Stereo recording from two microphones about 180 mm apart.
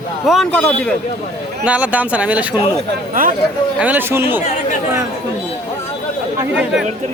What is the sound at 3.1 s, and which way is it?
Speech, 50° right (ahead or behind).